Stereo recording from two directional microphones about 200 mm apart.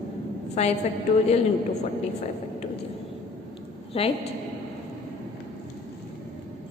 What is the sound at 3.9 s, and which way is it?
Speech, 30° left (ahead or behind).